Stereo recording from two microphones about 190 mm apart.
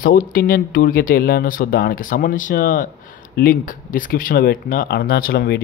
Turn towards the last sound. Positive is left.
turn(degrees=50)  # may be behind; listen again after turning